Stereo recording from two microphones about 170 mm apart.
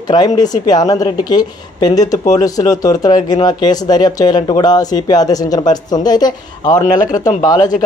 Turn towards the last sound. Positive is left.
turn(degrees=20)  # may be behind; listen again after turning